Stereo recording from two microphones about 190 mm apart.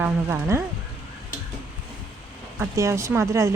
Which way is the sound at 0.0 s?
15° right (ahead or behind).